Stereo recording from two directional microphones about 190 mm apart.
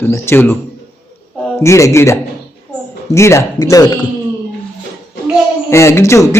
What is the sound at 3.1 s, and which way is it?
Speech, 15° left (ahead or behind).